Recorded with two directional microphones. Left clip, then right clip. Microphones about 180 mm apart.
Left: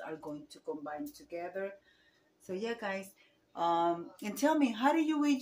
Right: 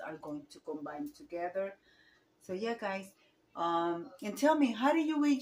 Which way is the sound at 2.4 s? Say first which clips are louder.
Right 1 dB; 10° left (ahead or behind).